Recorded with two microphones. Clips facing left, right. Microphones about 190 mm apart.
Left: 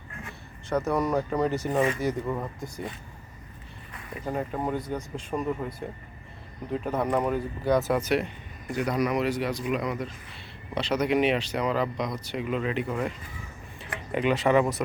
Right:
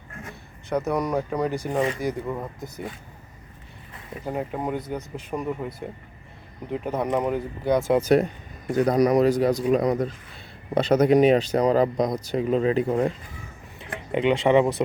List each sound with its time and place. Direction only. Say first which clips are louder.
0.9 s speech: right 1 dB; 15° right (ahead or behind)
1.7 s speech: right 1 dB; 10° left (ahead or behind)
2.0 s speech: right 1 dB; 10° right (ahead or behind)
3.9 s speech: right 1 dB; 15° right (ahead or behind)
7.9 s speech: right 5 dB; 25° right (ahead or behind)
8.7 s speech: right 7 dB; 40° right (ahead or behind)
13.7 s tick-tock: right 3 dB; 20° right (ahead or behind)